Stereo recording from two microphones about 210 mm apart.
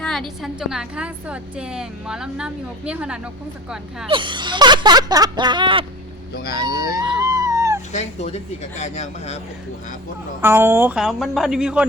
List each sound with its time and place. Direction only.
0.0 s a woman's voice: centre (ahead or behind)
4.1 s speech: 25° right (ahead or behind)
6.3 s speech: 50° left (ahead or behind)
6.7 s music: 15° right (ahead or behind)
7.2 s a sound: 15° right (ahead or behind)
7.9 s speech: 35° left (ahead or behind)
10.4 s a woman's voice: 10° right (ahead or behind)